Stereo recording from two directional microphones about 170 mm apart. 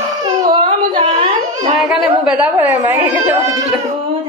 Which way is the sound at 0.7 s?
35° right (ahead or behind).